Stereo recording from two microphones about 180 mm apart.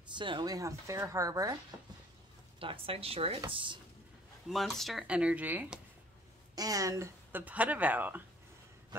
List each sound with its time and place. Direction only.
0.1 s speech: 25° right (ahead or behind)
2.6 s speech: 30° right (ahead or behind)
4.5 s speech: centre (ahead or behind)
6.5 s speech: 20° right (ahead or behind)